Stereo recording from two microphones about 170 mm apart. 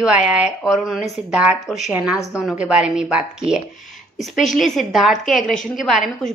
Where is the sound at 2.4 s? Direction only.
5° right (ahead or behind).